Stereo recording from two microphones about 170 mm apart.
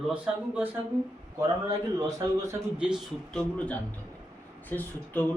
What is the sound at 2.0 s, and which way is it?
Speech, 20° right (ahead or behind).